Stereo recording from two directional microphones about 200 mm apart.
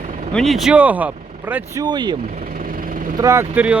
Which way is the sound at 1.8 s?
20° right (ahead or behind).